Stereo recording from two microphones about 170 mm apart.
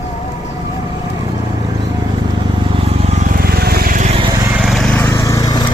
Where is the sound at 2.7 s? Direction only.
40° right (ahead or behind).